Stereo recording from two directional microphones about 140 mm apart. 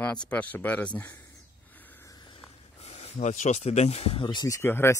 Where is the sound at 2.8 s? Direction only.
50° left (ahead or behind).